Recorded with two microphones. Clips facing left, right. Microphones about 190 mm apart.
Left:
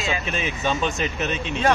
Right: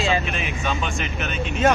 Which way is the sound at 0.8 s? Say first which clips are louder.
Left 3 dB; 35° left (ahead or behind).